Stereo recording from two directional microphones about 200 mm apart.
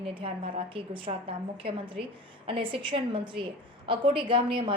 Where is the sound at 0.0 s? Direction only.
25° right (ahead or behind).